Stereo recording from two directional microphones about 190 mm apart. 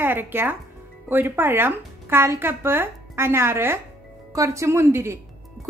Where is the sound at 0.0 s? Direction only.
10° right (ahead or behind).